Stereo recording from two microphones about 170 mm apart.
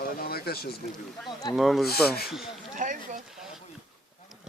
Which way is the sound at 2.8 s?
50° right (ahead or behind).